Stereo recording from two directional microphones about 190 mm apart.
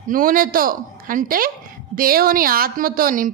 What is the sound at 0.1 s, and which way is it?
A man's voice, 45° right (ahead or behind).